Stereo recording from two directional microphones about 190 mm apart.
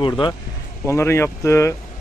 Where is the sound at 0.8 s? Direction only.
15° left (ahead or behind).